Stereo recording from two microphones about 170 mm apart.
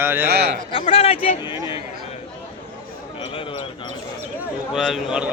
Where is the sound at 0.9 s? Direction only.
35° left (ahead or behind).